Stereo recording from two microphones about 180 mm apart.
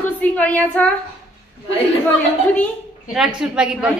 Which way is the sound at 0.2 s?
10° left (ahead or behind).